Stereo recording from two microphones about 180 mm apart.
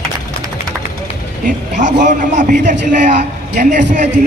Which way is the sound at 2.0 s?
45° right (ahead or behind).